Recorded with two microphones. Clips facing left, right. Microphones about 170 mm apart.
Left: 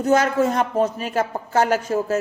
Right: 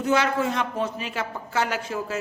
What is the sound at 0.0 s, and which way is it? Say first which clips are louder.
A man's voice: left 5 dB; 45° left (ahead or behind).